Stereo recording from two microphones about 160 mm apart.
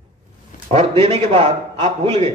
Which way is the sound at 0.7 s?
35° right (ahead or behind).